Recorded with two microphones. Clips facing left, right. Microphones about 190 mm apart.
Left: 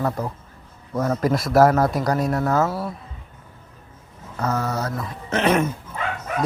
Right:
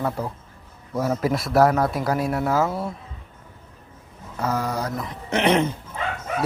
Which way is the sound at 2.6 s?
20° right (ahead or behind).